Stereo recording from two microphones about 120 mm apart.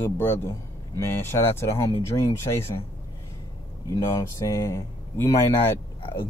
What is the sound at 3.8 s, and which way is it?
Speech, 30° left (ahead or behind).